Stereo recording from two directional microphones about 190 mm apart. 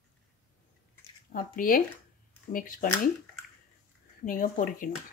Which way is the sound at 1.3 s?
45° left (ahead or behind).